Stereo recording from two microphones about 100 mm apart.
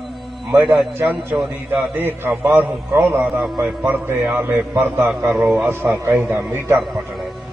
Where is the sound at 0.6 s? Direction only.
5° right (ahead or behind).